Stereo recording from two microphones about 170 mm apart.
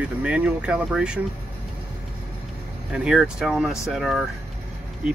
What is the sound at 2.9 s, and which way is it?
Speech, 5° right (ahead or behind).